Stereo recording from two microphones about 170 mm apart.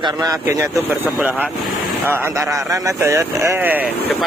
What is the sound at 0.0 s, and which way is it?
Speech, 20° right (ahead or behind).